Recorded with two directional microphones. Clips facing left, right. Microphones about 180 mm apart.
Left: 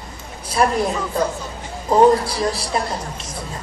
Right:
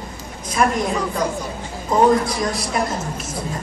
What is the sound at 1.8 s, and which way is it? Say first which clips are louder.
Speech: left 2 dB; 30° left (ahead or behind).